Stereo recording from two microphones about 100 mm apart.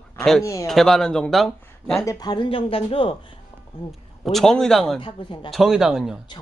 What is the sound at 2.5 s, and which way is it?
Speech, 70° left (ahead or behind).